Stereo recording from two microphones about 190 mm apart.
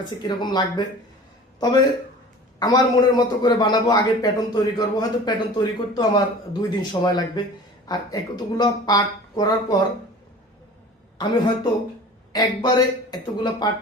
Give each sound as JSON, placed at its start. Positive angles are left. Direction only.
{"t": 0.1, "sound": "a man's voice", "side_deg": 20}
{"t": 12.3, "sound": "a man's voice", "side_deg": 20}